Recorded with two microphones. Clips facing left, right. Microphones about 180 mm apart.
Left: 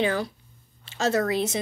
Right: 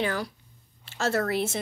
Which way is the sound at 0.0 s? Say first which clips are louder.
Left 4 dB; 20° left (ahead or behind).